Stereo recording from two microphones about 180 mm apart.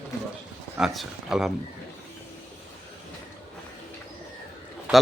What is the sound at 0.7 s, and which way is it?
Speech, centre (ahead or behind).